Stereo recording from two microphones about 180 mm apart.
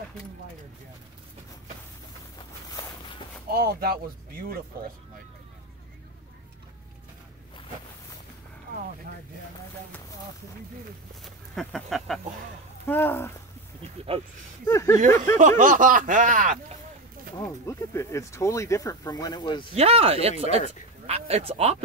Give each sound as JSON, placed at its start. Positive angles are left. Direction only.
{"t": 2.3, "sound": "walk", "side_deg": 25}
{"t": 3.4, "sound": "speech", "side_deg": -60}
{"t": 11.2, "sound": "speech", "side_deg": 0}
{"t": 14.7, "sound": "speech", "side_deg": 15}
{"t": 15.3, "sound": "speech", "side_deg": -45}
{"t": 17.6, "sound": "speech", "side_deg": 15}
{"t": 19.7, "sound": "speech", "side_deg": -35}